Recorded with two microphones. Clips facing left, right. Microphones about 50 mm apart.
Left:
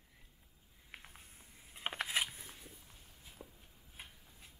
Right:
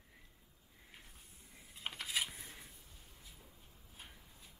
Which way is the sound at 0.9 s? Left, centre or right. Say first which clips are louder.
Left 6 dB; left.